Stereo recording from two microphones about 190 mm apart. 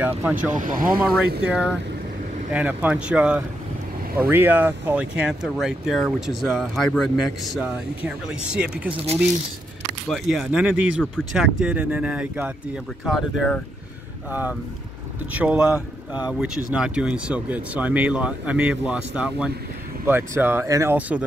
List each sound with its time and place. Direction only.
0.0 s speech: 10° right (ahead or behind)
8.9 s speech: 30° right (ahead or behind)
10.0 s speech: centre (ahead or behind)